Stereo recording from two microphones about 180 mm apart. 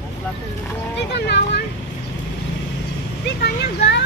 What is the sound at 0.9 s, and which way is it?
Vehicle, 75° left (ahead or behind).